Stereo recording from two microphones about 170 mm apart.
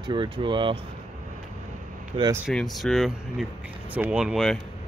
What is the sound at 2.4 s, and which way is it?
Speech, centre (ahead or behind).